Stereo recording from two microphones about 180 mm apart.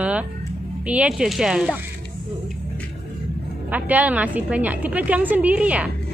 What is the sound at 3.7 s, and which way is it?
A woman's voice, 10° right (ahead or behind).